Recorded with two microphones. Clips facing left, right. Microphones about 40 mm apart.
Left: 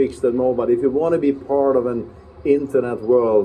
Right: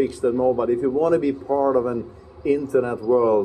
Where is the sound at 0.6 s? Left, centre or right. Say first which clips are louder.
Left 2 dB; left.